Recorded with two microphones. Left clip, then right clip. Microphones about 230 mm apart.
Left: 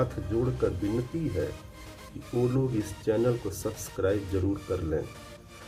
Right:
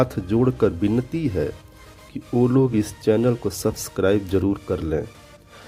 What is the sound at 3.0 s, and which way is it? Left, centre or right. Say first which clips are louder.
Speech: right 7 dB; right.